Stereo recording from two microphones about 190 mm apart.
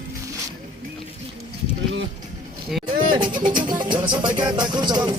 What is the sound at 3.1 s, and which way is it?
Music, 25° right (ahead or behind).